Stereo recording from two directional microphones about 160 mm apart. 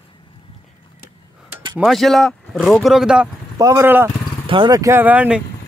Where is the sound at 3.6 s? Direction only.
20° right (ahead or behind).